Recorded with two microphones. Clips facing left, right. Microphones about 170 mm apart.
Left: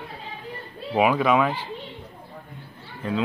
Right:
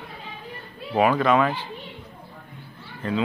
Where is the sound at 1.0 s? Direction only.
5° left (ahead or behind).